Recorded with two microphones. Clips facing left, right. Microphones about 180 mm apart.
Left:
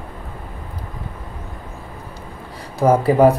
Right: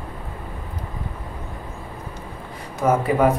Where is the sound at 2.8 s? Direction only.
35° left (ahead or behind).